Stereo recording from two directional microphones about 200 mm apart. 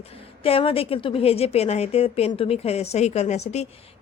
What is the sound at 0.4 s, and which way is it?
A woman's voice, 30° left (ahead or behind).